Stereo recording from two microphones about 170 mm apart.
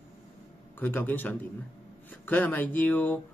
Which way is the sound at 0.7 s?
10° left (ahead or behind).